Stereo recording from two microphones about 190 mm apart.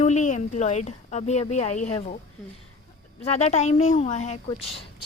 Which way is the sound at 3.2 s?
35° left (ahead or behind).